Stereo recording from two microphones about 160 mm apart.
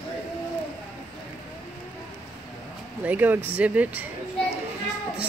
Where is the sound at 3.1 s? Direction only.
10° right (ahead or behind).